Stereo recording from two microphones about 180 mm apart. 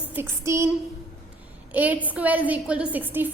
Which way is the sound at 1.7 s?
10° right (ahead or behind).